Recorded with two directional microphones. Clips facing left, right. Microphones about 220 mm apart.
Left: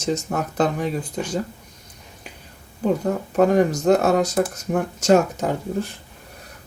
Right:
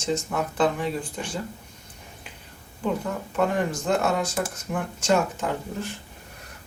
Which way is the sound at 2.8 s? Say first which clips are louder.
Left 6 dB; 40° left (ahead or behind).